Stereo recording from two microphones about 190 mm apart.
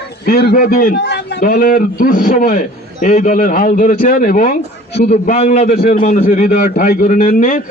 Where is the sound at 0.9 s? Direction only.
65° left (ahead or behind).